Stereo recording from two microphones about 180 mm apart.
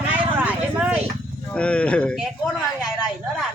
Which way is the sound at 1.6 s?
5° left (ahead or behind).